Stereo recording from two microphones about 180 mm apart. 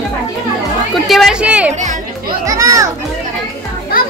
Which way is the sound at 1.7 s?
45° right (ahead or behind).